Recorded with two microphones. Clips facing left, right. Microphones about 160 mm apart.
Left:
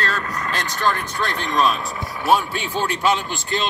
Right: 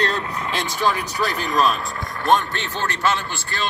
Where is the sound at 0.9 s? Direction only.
5° right (ahead or behind).